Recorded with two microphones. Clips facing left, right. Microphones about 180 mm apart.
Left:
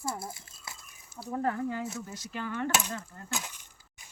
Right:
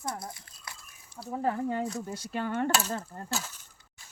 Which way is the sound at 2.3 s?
40° right (ahead or behind).